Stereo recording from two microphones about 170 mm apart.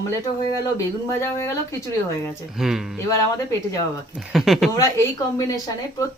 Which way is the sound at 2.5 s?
Centre (ahead or behind).